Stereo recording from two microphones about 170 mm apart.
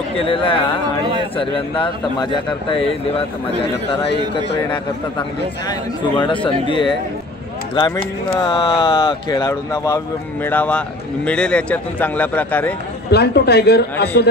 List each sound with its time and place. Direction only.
0.3 s a man's voice: 30° left (ahead or behind)
5.7 s speech: 30° left (ahead or behind)
8.4 s a man's voice: 25° left (ahead or behind); by 12.7 s 10° left (ahead or behind)
13.1 s speech: 75° left (ahead or behind)